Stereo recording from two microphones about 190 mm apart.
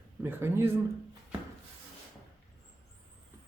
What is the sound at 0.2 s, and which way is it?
Speech, 10° right (ahead or behind).